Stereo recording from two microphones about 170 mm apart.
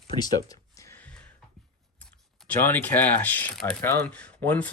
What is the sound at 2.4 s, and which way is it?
Speech, 10° left (ahead or behind).